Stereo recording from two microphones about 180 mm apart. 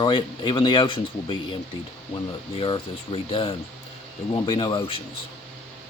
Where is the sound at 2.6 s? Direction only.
30° left (ahead or behind).